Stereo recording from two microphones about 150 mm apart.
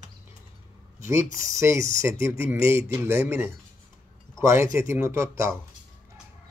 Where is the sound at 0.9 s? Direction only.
20° right (ahead or behind).